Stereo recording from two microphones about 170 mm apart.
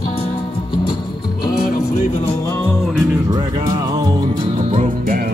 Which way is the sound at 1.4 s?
55° left (ahead or behind).